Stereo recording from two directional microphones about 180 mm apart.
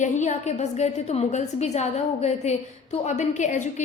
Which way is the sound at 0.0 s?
40° left (ahead or behind).